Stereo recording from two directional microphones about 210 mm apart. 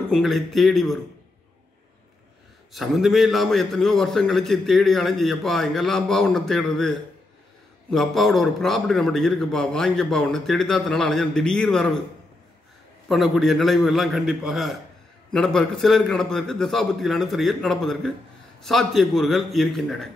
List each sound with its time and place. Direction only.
0.1 s a man's voice: centre (ahead or behind)
2.7 s a man's voice: centre (ahead or behind)
13.1 s a man's voice: centre (ahead or behind)